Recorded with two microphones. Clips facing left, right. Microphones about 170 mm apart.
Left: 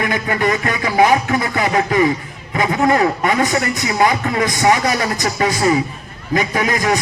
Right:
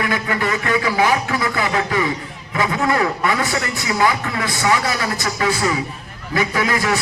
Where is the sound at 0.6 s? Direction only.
35° left (ahead or behind).